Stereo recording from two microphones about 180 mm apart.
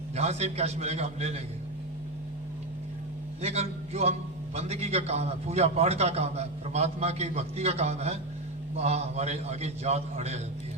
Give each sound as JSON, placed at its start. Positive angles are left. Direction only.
{"t": 0.2, "sound": "a man's voice", "side_deg": -35}
{"t": 3.4, "sound": "a man's voice", "side_deg": -35}